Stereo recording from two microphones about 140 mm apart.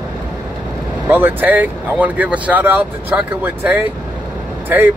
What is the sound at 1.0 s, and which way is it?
Speech, 15° right (ahead or behind).